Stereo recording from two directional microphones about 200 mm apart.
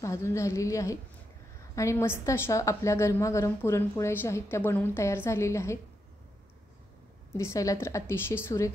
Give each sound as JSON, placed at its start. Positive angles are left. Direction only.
{"t": 0.0, "sound": "a woman's voice", "side_deg": 15}
{"t": 7.3, "sound": "a woman's voice", "side_deg": 15}